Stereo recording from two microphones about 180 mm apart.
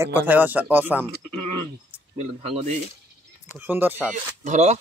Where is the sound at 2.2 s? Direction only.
35° right (ahead or behind).